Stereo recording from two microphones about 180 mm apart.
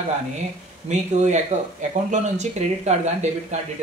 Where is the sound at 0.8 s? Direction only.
40° right (ahead or behind).